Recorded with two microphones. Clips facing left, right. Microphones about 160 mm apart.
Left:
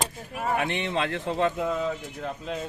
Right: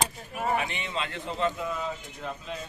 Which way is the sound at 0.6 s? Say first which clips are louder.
Left 5 dB; 65° left (ahead or behind).